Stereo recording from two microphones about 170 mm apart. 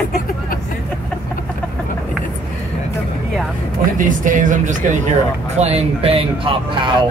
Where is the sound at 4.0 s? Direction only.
50° right (ahead or behind).